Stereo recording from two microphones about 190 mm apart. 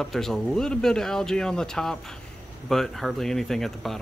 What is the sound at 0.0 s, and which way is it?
Speech, centre (ahead or behind).